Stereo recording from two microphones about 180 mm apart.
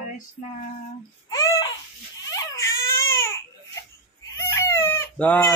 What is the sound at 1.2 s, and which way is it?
Wail, 20° left (ahead or behind).